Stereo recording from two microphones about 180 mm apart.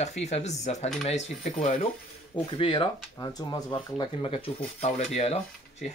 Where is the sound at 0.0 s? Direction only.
40° left (ahead or behind).